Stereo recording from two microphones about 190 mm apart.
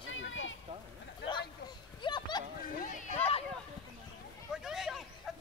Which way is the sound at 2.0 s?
25° left (ahead or behind).